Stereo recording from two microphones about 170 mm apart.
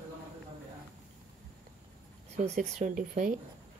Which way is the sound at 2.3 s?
40° right (ahead or behind).